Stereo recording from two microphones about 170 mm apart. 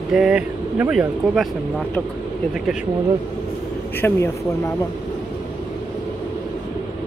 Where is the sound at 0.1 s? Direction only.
5° right (ahead or behind).